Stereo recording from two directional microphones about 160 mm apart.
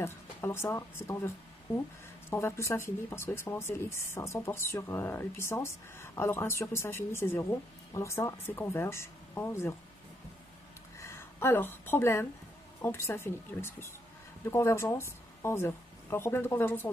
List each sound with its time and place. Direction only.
0.0 s speech: 15° left (ahead or behind)
11.0 s speech: 20° left (ahead or behind)